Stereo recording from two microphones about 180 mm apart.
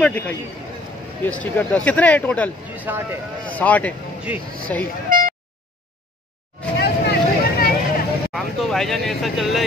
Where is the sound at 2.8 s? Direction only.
10° right (ahead or behind).